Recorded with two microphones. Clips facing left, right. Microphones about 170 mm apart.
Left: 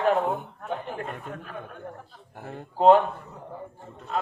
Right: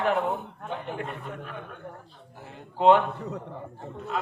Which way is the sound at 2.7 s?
40° left (ahead or behind).